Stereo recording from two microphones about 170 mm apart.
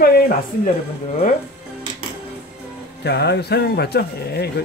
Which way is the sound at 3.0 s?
75° left (ahead or behind).